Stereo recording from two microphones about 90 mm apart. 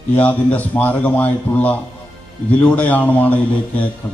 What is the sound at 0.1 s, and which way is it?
A man's voice, 20° left (ahead or behind).